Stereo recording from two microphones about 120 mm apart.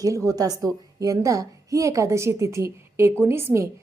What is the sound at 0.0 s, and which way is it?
A woman's voice, 25° right (ahead or behind).